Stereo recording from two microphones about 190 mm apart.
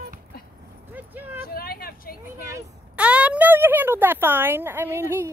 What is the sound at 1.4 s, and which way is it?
Vehicle, 50° left (ahead or behind).